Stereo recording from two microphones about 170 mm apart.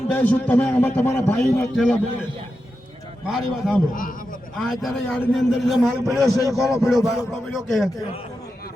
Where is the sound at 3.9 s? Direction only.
55° left (ahead or behind).